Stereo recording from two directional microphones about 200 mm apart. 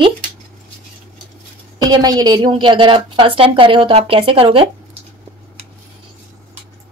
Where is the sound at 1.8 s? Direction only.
20° right (ahead or behind).